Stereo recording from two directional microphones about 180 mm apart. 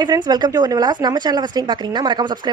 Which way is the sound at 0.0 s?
25° right (ahead or behind).